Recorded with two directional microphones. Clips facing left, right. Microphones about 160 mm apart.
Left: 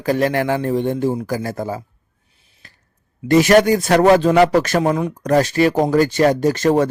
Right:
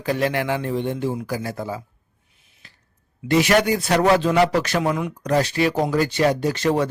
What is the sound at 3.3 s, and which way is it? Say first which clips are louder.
Speech: left 6 dB; 45° left (ahead or behind).